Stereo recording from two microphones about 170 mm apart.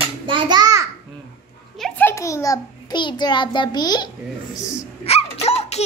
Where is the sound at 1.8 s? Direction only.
5° left (ahead or behind); by 4.1 s 25° left (ahead or behind).